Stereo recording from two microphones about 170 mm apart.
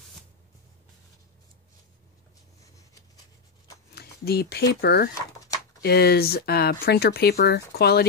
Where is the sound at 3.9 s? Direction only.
70° left (ahead or behind).